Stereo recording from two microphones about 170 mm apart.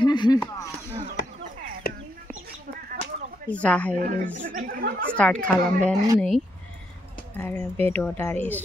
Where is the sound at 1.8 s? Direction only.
65° left (ahead or behind).